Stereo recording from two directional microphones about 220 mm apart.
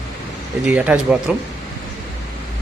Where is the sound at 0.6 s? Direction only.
5° right (ahead or behind).